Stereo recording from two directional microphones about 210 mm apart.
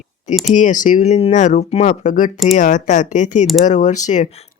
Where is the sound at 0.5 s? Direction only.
35° left (ahead or behind).